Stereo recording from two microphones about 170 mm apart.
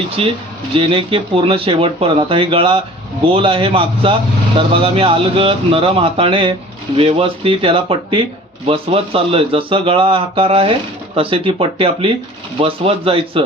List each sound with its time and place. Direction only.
0.2 s speech: 35° right (ahead or behind)